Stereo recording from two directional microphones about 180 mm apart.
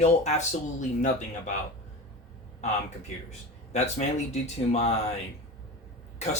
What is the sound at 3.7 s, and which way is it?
Speech, 40° left (ahead or behind).